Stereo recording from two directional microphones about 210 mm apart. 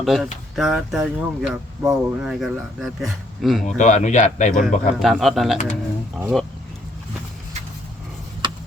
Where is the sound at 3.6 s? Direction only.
35° left (ahead or behind).